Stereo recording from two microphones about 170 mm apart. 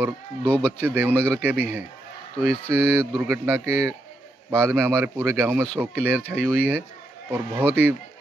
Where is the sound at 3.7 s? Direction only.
15° right (ahead or behind).